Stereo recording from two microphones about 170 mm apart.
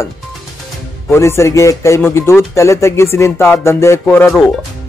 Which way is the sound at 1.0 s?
15° left (ahead or behind).